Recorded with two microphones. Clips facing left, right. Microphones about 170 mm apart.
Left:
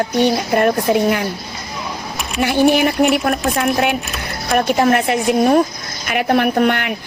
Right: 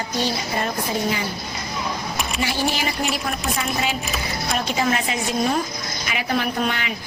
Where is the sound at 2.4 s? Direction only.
60° left (ahead or behind).